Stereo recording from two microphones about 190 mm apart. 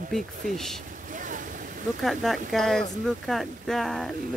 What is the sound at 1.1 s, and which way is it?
Boat, 45° right (ahead or behind).